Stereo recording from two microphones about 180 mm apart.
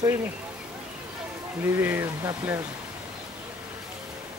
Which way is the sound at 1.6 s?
15° right (ahead or behind).